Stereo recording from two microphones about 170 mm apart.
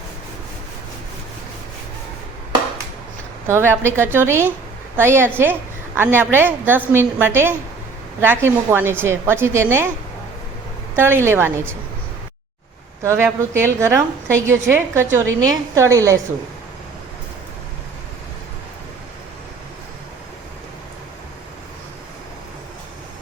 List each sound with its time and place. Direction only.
3.4 s a woman's voice: 15° right (ahead or behind)
10.9 s a woman's voice: 15° right (ahead or behind)
13.0 s a woman's voice: 15° right (ahead or behind)